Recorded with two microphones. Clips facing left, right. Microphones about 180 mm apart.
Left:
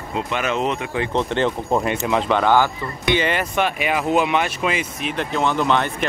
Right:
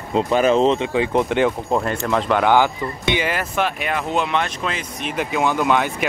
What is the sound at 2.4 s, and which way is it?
Speech, 15° right (ahead or behind).